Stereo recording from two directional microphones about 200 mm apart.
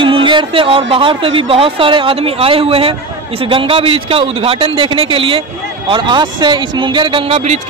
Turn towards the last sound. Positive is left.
turn(degrees=-30)  # may be behind; listen again after turning